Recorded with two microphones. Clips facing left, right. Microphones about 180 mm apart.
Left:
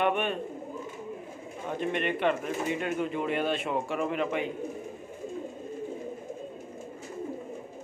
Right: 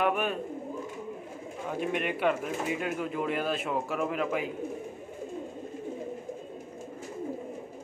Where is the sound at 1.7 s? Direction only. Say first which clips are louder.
Left 1 dB; 5° right (ahead or behind).